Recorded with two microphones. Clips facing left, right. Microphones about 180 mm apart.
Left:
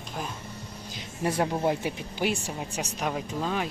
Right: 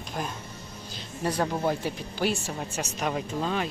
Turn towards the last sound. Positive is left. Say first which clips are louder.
# right 1 dB
turn(degrees=5)  # may be behind; listen again after turning